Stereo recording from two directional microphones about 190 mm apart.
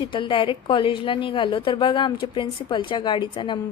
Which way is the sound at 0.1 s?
25° left (ahead or behind).